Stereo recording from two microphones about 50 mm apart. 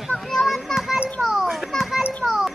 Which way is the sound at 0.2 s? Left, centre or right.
Centre.